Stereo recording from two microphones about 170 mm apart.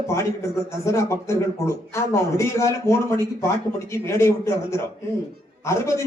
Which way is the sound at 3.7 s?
15° left (ahead or behind).